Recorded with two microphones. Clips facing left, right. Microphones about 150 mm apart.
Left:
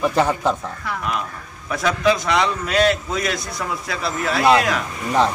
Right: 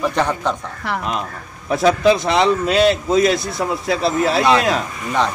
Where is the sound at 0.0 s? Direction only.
5° left (ahead or behind).